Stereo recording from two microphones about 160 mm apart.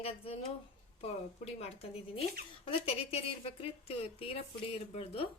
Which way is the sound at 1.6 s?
40° left (ahead or behind).